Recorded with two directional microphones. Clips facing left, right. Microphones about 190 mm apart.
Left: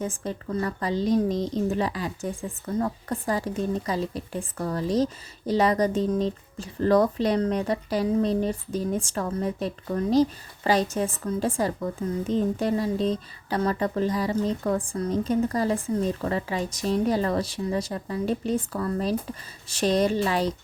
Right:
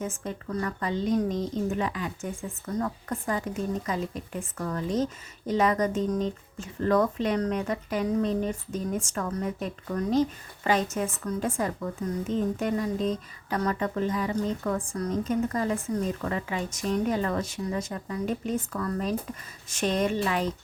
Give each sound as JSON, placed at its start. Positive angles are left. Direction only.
{"t": 0.0, "sound": "speech", "side_deg": 35}